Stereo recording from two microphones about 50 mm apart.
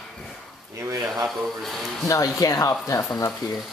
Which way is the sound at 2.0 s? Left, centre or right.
Left.